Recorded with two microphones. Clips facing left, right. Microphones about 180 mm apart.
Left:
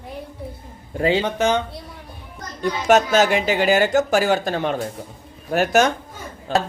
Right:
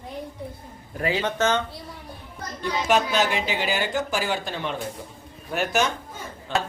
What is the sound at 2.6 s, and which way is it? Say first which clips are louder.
Speech: left 6 dB; 45° left (ahead or behind).